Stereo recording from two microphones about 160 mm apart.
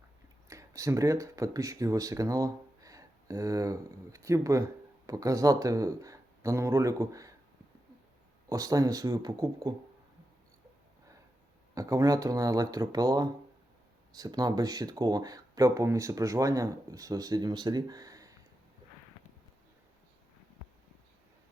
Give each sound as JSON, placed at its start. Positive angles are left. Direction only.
{"t": 0.4, "sound": "speech", "side_deg": -20}
{"t": 8.4, "sound": "speech", "side_deg": -20}
{"t": 11.7, "sound": "speech", "side_deg": -20}